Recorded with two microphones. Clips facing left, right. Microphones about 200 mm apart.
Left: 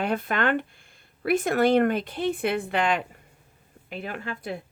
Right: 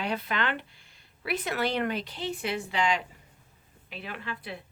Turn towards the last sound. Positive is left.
turn(degrees=45)  # may be behind; listen again after turning